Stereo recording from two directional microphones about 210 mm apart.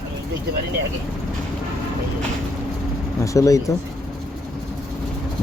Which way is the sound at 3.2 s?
15° left (ahead or behind).